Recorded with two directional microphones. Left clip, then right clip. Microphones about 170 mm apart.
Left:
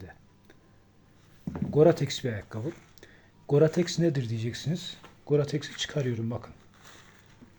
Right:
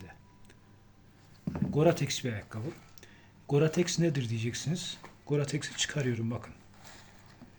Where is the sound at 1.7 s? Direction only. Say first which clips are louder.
Left 6 dB; 45° left (ahead or behind).